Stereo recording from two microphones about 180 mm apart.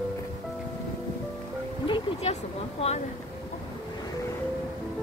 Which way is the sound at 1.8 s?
30° left (ahead or behind).